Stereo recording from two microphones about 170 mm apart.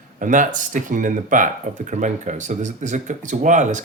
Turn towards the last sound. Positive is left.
turn(degrees=-45)  # may be behind; listen again after turning